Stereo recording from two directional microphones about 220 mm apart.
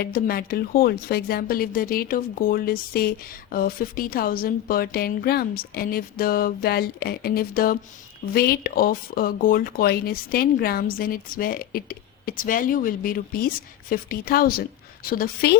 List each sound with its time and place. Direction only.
0.0 s speech: 45° left (ahead or behind)